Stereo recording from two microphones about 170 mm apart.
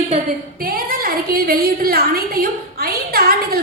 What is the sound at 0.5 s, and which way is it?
A woman's voice, 60° right (ahead or behind).